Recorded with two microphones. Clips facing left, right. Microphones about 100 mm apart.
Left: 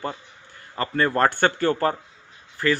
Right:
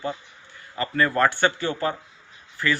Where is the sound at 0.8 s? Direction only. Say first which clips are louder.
Left 1 dB; 35° left (ahead or behind).